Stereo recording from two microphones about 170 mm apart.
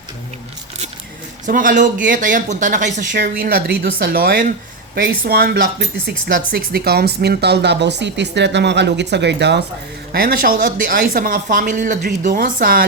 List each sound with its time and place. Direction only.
1.5 s speech: 50° right (ahead or behind)
3.1 s speech: 75° right (ahead or behind)
10.1 s speech: 60° right (ahead or behind)